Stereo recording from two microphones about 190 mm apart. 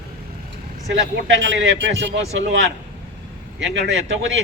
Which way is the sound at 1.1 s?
75° right (ahead or behind).